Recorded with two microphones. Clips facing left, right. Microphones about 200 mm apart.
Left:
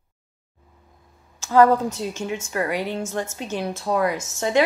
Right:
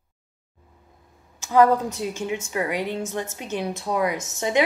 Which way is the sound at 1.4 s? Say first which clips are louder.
Left 2 dB; 15° right (ahead or behind).